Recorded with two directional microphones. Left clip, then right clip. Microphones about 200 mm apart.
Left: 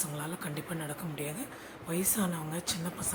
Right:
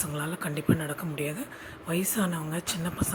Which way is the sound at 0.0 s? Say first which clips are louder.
Right 5 dB; 20° right (ahead or behind).